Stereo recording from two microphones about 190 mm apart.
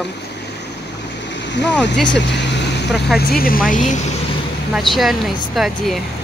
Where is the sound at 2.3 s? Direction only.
65° left (ahead or behind).